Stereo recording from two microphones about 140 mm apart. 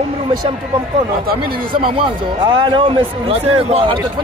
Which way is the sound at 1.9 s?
35° right (ahead or behind).